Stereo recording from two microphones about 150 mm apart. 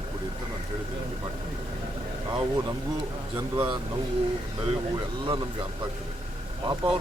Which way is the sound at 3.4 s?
15° right (ahead or behind).